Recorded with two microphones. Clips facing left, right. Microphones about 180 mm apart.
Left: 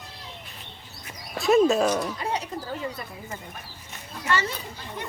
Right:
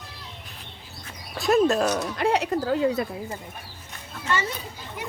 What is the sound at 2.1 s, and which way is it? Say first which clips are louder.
Speech: right 7 dB; 75° right (ahead or behind).